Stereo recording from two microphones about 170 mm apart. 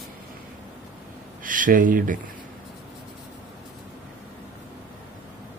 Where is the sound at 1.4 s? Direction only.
50° right (ahead or behind).